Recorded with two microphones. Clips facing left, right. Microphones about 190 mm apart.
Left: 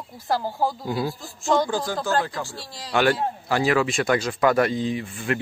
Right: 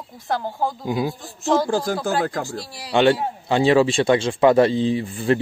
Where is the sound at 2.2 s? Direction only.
45° right (ahead or behind).